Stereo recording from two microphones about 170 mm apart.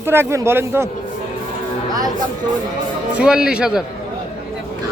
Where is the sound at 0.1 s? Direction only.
15° right (ahead or behind).